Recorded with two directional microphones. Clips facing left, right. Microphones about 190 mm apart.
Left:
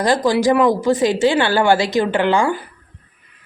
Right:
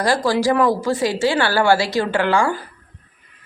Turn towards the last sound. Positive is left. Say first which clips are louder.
# left 2 dB
turn(degrees=20)  # may be behind; listen again after turning